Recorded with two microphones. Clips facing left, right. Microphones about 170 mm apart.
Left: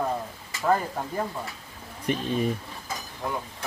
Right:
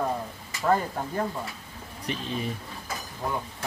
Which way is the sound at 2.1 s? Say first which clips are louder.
Left 6 dB; 50° left (ahead or behind).